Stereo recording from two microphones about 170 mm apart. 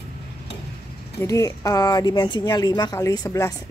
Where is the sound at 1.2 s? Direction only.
20° left (ahead or behind).